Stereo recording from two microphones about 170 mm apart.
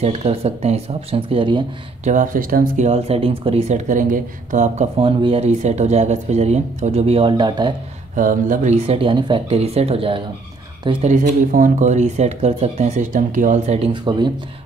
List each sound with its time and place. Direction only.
0.0 s speech: 35° right (ahead or behind)
2.0 s speech: 50° right (ahead or behind)
4.9 s speech: 35° right (ahead or behind)
8.2 s speech: 50° right (ahead or behind); by 14.3 s 25° right (ahead or behind)